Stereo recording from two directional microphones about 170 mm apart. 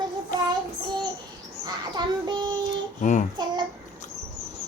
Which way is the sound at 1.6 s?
25° right (ahead or behind).